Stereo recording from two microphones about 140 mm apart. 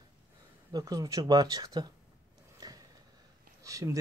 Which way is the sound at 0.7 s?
25° right (ahead or behind).